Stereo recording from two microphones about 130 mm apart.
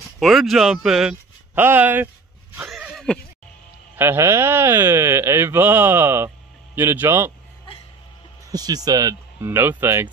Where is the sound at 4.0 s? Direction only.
20° right (ahead or behind).